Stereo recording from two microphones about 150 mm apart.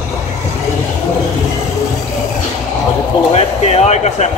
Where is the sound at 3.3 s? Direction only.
45° left (ahead or behind).